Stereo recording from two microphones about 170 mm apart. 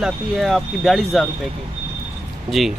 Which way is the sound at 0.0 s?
Centre (ahead or behind).